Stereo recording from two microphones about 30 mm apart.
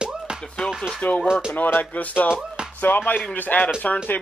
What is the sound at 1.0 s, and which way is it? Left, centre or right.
Speech, left.